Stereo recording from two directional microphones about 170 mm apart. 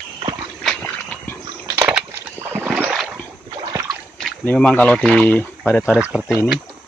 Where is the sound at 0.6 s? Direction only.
5° left (ahead or behind).